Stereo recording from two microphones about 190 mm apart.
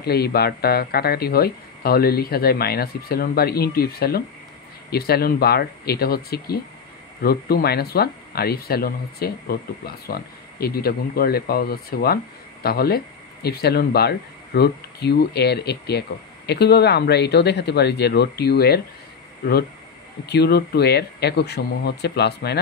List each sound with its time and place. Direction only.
0.0 s speech: 55° left (ahead or behind)
20.2 s speech: 60° left (ahead or behind)